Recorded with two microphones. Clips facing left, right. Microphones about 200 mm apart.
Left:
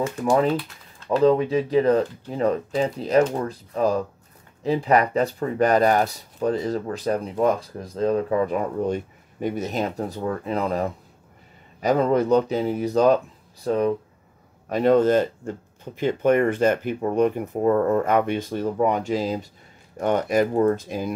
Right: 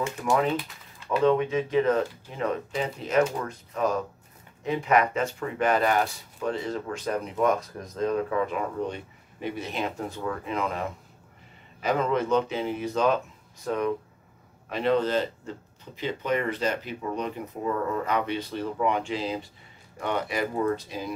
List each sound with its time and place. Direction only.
0.0 s speech: 35° left (ahead or behind)
14.7 s speech: 45° left (ahead or behind)